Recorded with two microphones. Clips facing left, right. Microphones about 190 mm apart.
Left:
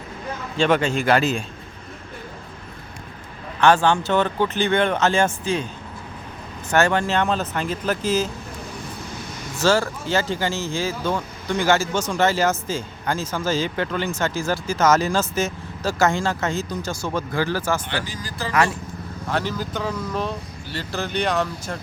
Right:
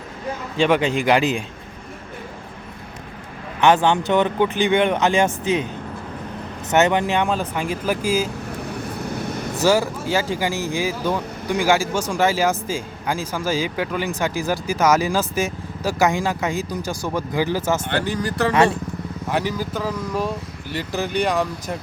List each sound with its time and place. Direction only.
0.5 s speech: 15° right (ahead or behind)
3.6 s speech: 20° right (ahead or behind)
6.7 s speech: 20° right (ahead or behind)
9.0 s a sound: 60° right (ahead or behind)
9.6 s speech: 15° right (ahead or behind)
17.8 s speech: 60° right (ahead or behind)
19.3 s speech: 15° right (ahead or behind)